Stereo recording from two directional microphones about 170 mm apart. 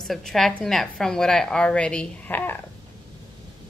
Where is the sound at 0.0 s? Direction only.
Centre (ahead or behind).